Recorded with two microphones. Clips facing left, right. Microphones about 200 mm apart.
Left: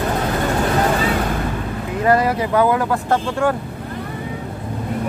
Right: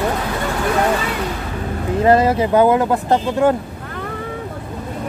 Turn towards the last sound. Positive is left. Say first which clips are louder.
# right 3 dB
turn(degrees=-20)  # may be behind; listen again after turning